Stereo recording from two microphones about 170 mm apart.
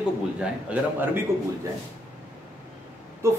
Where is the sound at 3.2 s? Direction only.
15° right (ahead or behind).